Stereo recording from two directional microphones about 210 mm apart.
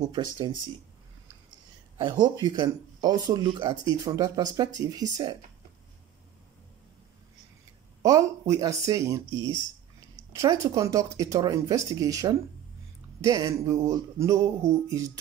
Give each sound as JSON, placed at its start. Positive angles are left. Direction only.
{"t": 0.1, "sound": "speech", "side_deg": -20}
{"t": 2.0, "sound": "speech", "side_deg": -20}
{"t": 8.0, "sound": "speech", "side_deg": -15}
{"t": 10.3, "sound": "speech", "side_deg": -15}